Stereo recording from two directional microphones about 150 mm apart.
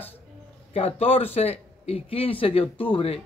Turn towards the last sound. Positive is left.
turn(degrees=40)  # may be behind; listen again after turning